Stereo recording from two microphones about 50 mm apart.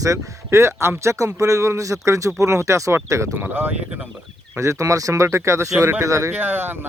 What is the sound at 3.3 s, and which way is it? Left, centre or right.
Speech, right.